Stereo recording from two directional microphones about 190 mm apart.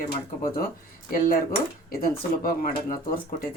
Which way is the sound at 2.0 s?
50° left (ahead or behind).